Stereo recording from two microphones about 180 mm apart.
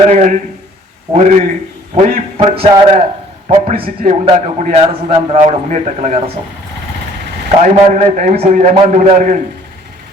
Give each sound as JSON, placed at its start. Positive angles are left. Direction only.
{"t": 0.1, "sound": "a man's voice", "side_deg": -40}
{"t": 3.5, "sound": "a man's voice", "side_deg": -45}
{"t": 4.1, "sound": "a man's voice", "side_deg": -30}
{"t": 7.5, "sound": "a man's voice", "side_deg": -40}